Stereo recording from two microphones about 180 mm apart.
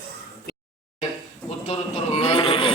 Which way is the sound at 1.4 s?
35° left (ahead or behind).